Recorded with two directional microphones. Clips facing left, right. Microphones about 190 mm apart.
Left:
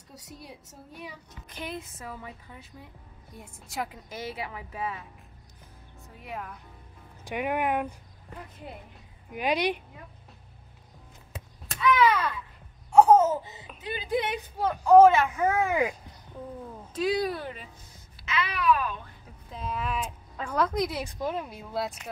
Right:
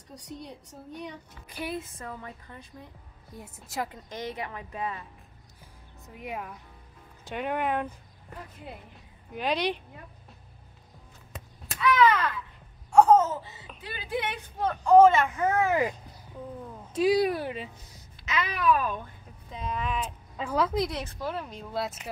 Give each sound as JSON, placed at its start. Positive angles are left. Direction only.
{"t": 0.1, "sound": "speech", "side_deg": 5}
{"t": 1.5, "sound": "speech", "side_deg": -5}
{"t": 6.1, "sound": "a woman's voice", "side_deg": -15}
{"t": 7.2, "sound": "a woman's voice", "side_deg": 10}
{"t": 9.3, "sound": "a woman's voice", "side_deg": 10}
{"t": 11.3, "sound": "a sound", "side_deg": 10}
{"t": 12.9, "sound": "laughter", "side_deg": 10}
{"t": 13.8, "sound": "speech", "side_deg": 15}
{"t": 17.2, "sound": "a woman's voice", "side_deg": -15}
{"t": 18.2, "sound": "a child's voice", "side_deg": -45}
{"t": 19.5, "sound": "speech", "side_deg": 5}
{"t": 20.3, "sound": "a woman's voice", "side_deg": -5}
{"t": 20.9, "sound": "a woman's voice", "side_deg": 15}